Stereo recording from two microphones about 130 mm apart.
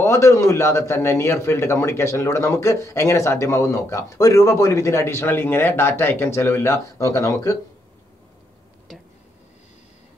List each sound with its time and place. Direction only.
0.0 s a man's voice: 25° left (ahead or behind)